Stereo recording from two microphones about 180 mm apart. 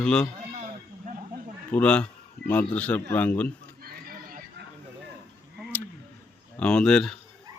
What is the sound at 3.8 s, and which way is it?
Neigh, 55° right (ahead or behind).